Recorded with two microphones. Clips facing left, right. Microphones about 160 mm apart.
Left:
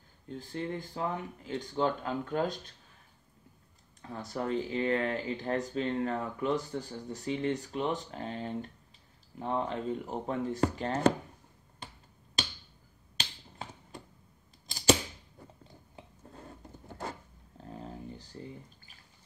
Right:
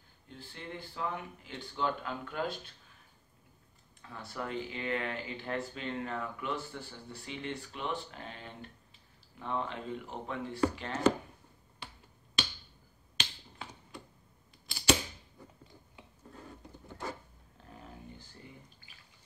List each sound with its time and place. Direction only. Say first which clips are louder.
0.3 s speech: left 9 dB; 40° left (ahead or behind)
4.0 s speech: left 5 dB; 40° left (ahead or behind)
12.4 s finger snapping: even; 40° left (ahead or behind)
17.6 s a sound: left 7 dB; 30° left (ahead or behind)